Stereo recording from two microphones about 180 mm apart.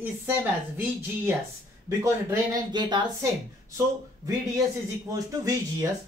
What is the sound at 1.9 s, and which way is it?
Speech, 20° right (ahead or behind).